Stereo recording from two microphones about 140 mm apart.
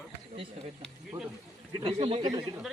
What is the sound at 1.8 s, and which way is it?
Speech, 40° right (ahead or behind).